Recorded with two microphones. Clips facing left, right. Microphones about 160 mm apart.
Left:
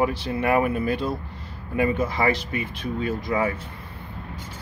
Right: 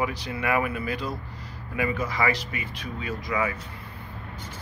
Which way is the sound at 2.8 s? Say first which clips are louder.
Left 7 dB; 50° left (ahead or behind).